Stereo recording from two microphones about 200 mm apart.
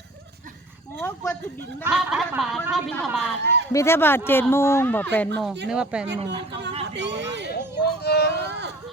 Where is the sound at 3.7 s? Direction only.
15° left (ahead or behind).